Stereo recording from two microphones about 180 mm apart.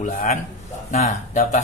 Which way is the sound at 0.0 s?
40° left (ahead or behind).